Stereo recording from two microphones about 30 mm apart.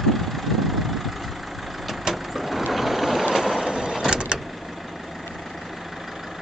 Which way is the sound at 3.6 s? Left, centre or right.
Right.